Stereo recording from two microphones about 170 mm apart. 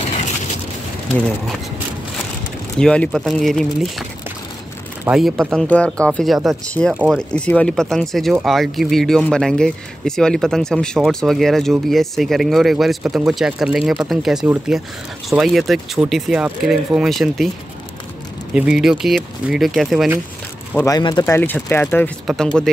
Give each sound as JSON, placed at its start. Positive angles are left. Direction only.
{"t": 2.8, "sound": "speech", "side_deg": 5}
{"t": 5.0, "sound": "speech", "side_deg": 0}
{"t": 6.9, "sound": "speech", "side_deg": -10}
{"t": 7.3, "sound": "speech", "side_deg": 5}
{"t": 18.5, "sound": "speech", "side_deg": -5}
{"t": 20.7, "sound": "speech", "side_deg": 20}
{"t": 21.4, "sound": "speech", "side_deg": 10}
{"t": 22.2, "sound": "speech", "side_deg": 0}